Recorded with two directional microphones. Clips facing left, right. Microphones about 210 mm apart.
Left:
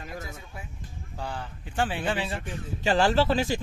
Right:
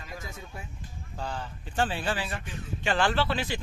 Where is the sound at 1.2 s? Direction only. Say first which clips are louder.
Even; 15° left (ahead or behind).